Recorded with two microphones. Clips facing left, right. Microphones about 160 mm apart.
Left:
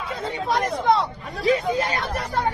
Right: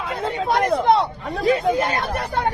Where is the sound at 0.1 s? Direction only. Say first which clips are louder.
Right 3 dB; 65° right (ahead or behind).